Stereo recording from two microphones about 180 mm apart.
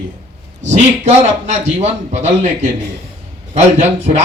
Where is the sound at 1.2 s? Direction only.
40° right (ahead or behind).